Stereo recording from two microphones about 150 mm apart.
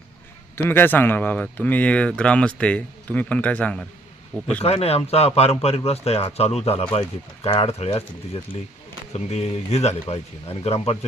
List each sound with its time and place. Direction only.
0.5 s speech: 15° left (ahead or behind)
4.6 s speech: 40° left (ahead or behind)